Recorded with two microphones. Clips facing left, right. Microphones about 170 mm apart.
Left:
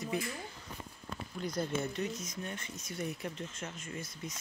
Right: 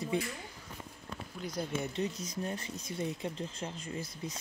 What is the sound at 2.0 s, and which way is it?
Speech, 30° right (ahead or behind).